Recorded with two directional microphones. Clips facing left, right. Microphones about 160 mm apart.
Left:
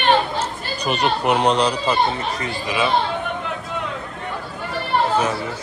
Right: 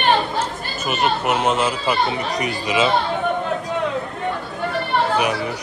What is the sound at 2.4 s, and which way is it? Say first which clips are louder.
Speech: right 4 dB; 20° right (ahead or behind).